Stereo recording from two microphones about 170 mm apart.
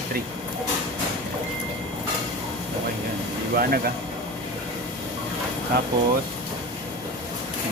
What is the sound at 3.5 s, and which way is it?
Speech, 60° right (ahead or behind).